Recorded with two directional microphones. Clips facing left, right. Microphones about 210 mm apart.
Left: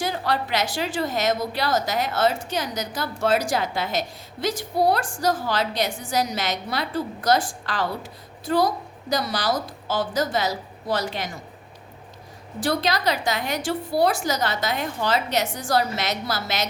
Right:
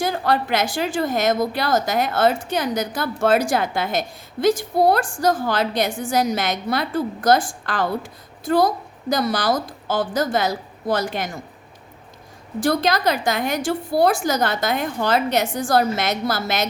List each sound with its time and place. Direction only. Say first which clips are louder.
0.0 s a woman's voice: right 4 dB; 50° right (ahead or behind)
12.5 s a woman's voice: right 4 dB; 50° right (ahead or behind)